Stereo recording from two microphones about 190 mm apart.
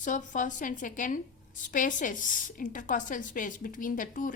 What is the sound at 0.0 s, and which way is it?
A woman's voice, 40° left (ahead or behind).